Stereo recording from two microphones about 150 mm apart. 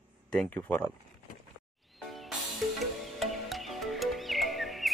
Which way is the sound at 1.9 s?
Centre (ahead or behind).